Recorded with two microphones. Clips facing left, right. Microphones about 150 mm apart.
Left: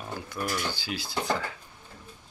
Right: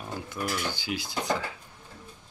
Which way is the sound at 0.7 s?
20° right (ahead or behind).